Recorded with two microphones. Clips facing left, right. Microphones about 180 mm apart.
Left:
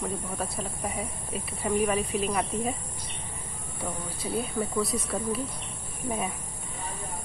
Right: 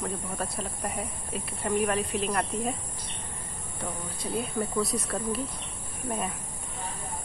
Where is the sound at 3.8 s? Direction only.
5° left (ahead or behind).